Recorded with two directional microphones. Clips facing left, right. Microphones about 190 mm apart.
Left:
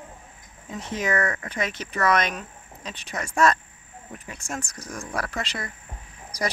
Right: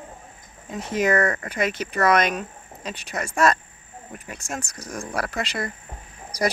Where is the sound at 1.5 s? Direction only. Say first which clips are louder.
Right 4 dB; 10° right (ahead or behind).